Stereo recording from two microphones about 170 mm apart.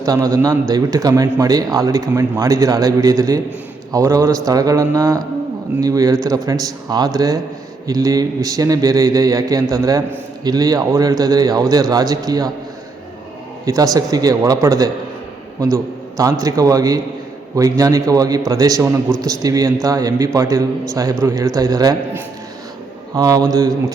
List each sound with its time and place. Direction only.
0.0 s a man's voice: 20° right (ahead or behind)
13.7 s a man's voice: 20° right (ahead or behind)